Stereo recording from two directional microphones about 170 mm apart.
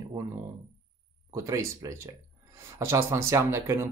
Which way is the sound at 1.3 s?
20° right (ahead or behind).